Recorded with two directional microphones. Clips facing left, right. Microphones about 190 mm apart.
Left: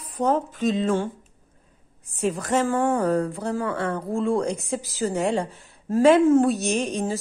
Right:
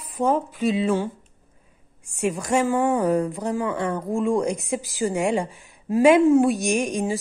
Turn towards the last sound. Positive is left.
turn(degrees=-15)  # may be behind; listen again after turning